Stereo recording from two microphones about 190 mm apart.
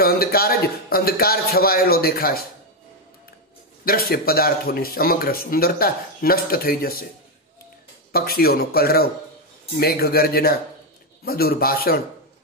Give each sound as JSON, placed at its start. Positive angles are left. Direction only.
{"t": 0.0, "sound": "speech", "side_deg": 55}
{"t": 3.8, "sound": "speech", "side_deg": 50}
{"t": 8.1, "sound": "speech", "side_deg": 50}